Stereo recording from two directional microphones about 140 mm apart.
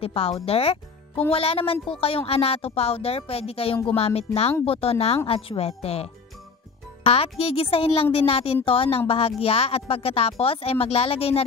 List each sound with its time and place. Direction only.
0.0 s speech: 45° left (ahead or behind)